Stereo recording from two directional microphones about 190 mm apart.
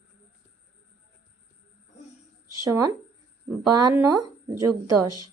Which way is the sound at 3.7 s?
20° right (ahead or behind).